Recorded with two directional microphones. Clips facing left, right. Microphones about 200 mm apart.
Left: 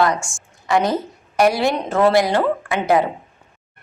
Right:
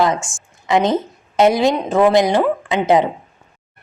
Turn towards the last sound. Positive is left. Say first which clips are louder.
# right 3 dB
turn(degrees=-20)  # may be behind; listen again after turning